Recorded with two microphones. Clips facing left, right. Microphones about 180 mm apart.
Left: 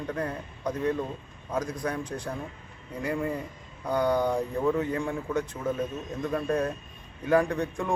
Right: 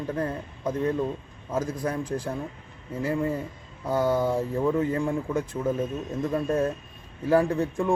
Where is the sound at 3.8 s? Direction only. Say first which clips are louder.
Right 1 dB; 5° right (ahead or behind).